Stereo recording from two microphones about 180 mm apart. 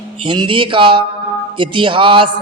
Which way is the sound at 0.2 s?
25° right (ahead or behind).